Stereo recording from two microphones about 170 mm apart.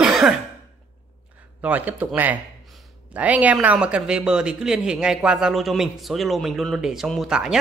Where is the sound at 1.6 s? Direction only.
10° right (ahead or behind).